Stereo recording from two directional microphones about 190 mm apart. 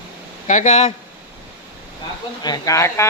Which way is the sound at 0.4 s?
40° left (ahead or behind).